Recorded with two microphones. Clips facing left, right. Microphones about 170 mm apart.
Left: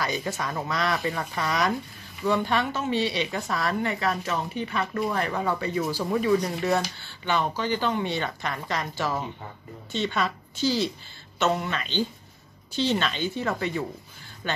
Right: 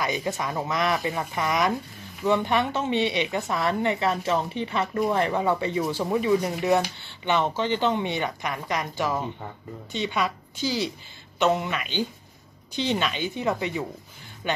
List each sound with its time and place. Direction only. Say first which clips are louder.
0.0 s a woman's voice: right 2 dB; 20° right (ahead or behind)